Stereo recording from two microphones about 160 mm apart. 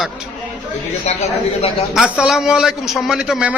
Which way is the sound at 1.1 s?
45° left (ahead or behind).